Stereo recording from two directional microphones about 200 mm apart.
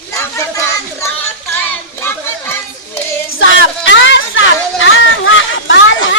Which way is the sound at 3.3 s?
75° left (ahead or behind).